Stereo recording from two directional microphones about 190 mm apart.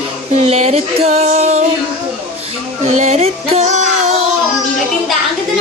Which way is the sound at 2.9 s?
35° right (ahead or behind).